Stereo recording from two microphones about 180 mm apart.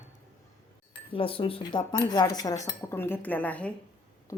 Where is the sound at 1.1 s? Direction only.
30° left (ahead or behind); by 3.7 s 10° left (ahead or behind).